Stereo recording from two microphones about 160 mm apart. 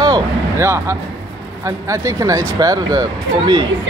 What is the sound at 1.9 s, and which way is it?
Speech, 20° right (ahead or behind).